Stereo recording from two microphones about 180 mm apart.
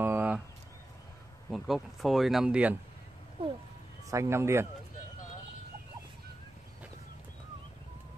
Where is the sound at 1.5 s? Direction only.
Centre (ahead or behind).